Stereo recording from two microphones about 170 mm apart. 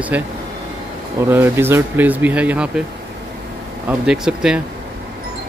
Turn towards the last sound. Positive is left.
turn(degrees=-5)  # may be behind; listen again after turning